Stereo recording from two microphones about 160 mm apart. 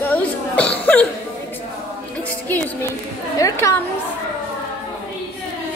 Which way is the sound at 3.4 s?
20° left (ahead or behind).